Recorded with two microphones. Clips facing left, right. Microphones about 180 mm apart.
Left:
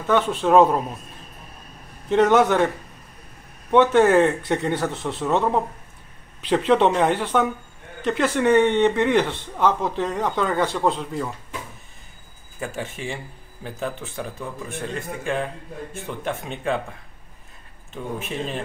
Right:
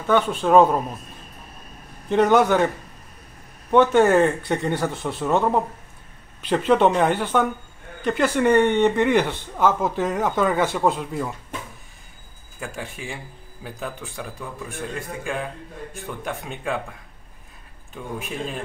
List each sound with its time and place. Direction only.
0.0 s speech: centre (ahead or behind)
2.0 s speech: centre (ahead or behind)
3.7 s speech: centre (ahead or behind)
12.5 s speech: centre (ahead or behind)
18.2 s speech: centre (ahead or behind)